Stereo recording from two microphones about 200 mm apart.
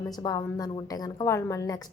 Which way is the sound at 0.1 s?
20° left (ahead or behind).